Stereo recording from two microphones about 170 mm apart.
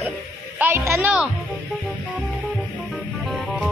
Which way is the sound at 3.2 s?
Centre (ahead or behind).